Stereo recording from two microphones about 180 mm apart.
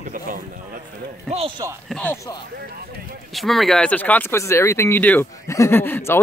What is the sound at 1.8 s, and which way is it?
Speech, 5° left (ahead or behind).